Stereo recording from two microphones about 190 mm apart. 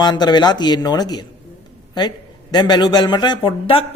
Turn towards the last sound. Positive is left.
turn(degrees=30)  # may be behind; listen again after turning